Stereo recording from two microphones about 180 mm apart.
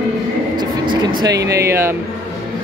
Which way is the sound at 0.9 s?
20° right (ahead or behind).